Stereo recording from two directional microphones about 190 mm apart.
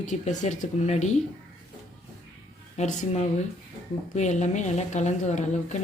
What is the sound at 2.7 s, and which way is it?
A woman's voice, 40° left (ahead or behind).